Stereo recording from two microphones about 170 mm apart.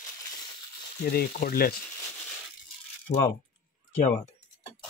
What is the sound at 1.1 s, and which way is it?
Speech, 60° left (ahead or behind).